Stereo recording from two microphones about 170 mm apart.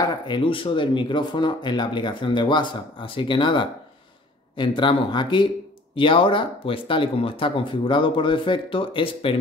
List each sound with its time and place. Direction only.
0.0 s speech: 30° left (ahead or behind)